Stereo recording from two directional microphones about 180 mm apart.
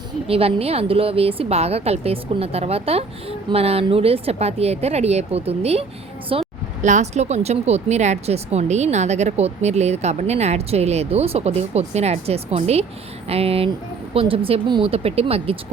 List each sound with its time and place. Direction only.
0.3 s speech: 35° right (ahead or behind)